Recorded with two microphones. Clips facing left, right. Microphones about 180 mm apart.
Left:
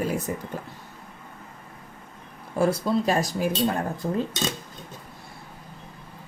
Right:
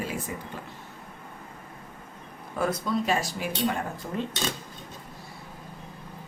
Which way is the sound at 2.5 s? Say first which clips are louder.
Left 5 dB; 30° left (ahead or behind).